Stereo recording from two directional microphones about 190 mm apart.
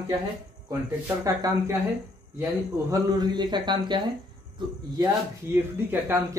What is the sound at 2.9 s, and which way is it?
Speech, 20° right (ahead or behind).